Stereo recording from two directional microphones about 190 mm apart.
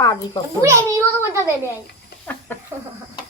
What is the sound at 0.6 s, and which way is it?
Speech, 20° right (ahead or behind).